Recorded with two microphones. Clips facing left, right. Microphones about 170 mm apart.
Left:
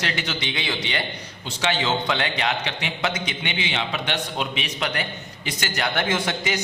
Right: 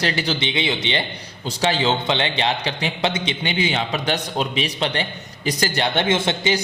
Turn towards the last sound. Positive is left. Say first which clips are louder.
# right 5 dB
turn(degrees=-25)  # may be behind; listen again after turning